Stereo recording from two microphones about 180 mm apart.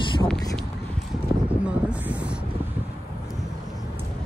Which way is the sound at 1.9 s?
5° right (ahead or behind).